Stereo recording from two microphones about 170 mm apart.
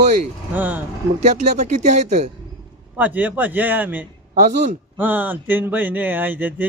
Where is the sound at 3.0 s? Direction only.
10° right (ahead or behind).